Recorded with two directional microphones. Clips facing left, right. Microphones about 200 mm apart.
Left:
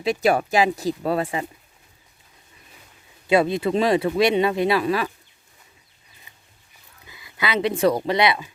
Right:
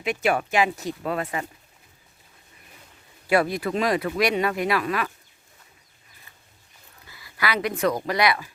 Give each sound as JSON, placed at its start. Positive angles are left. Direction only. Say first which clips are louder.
{"t": 0.0, "sound": "speech", "louder": "left 4 dB", "side_deg": 35}
{"t": 3.2, "sound": "speech", "louder": "left 3 dB", "side_deg": 20}
{"t": 6.3, "sound": "dog", "louder": "even", "side_deg": 15}
{"t": 7.1, "sound": "a sound", "louder": "left 2 dB", "side_deg": 20}
{"t": 7.8, "sound": "speech", "louder": "left 4 dB", "side_deg": 30}